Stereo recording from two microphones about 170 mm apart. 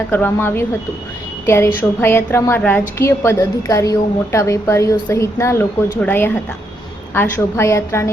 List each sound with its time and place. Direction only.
0.1 s a woman's voice: 15° left (ahead or behind)